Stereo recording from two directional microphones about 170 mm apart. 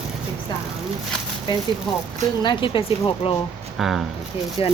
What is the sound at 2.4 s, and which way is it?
Speech, 25° left (ahead or behind).